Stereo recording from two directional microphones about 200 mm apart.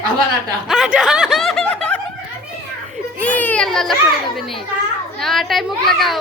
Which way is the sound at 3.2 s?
10° left (ahead or behind).